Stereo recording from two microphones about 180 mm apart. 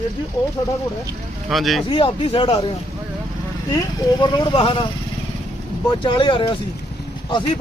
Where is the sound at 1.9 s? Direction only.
30° left (ahead or behind).